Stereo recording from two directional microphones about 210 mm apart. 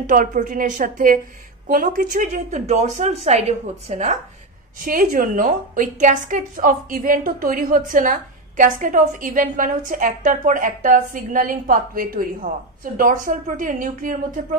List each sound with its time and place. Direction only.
0.0 s a woman's voice: 40° right (ahead or behind)